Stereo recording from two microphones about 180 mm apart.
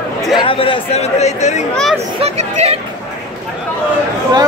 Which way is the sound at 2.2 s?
35° right (ahead or behind).